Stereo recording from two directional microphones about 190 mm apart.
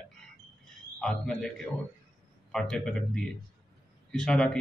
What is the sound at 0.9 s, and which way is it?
Speech, centre (ahead or behind).